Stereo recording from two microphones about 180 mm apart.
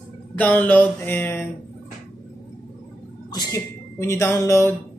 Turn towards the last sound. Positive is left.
turn(degrees=15)  # may be behind; listen again after turning